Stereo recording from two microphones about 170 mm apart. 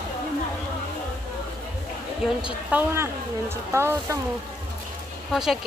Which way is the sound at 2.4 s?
10° right (ahead or behind).